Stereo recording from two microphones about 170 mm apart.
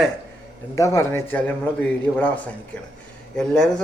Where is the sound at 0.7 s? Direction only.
20° left (ahead or behind).